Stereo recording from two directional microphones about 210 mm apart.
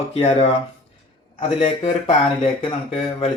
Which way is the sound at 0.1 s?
30° left (ahead or behind).